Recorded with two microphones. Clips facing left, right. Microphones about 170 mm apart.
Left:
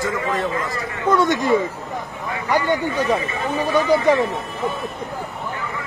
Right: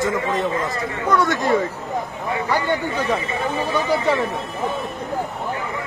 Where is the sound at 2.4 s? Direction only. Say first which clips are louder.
Left 4 dB; 15° left (ahead or behind).